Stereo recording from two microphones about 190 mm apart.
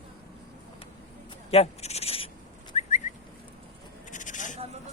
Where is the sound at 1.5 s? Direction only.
35° left (ahead or behind).